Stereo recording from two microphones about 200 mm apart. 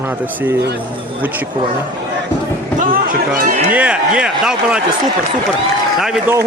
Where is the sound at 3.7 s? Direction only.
5° right (ahead or behind).